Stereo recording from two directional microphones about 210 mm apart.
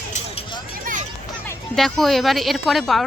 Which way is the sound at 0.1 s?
25° left (ahead or behind).